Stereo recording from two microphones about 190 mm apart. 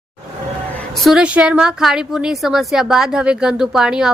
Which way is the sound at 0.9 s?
Centre (ahead or behind).